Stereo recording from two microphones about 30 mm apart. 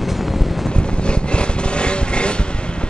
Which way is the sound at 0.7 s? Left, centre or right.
Left.